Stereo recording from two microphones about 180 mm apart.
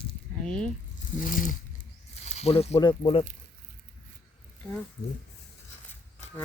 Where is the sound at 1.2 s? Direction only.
50° left (ahead or behind).